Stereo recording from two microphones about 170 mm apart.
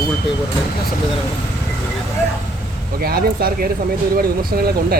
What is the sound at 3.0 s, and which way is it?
Speech, 60° right (ahead or behind).